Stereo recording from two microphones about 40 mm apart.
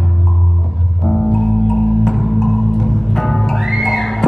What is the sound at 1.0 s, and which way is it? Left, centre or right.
Music, centre.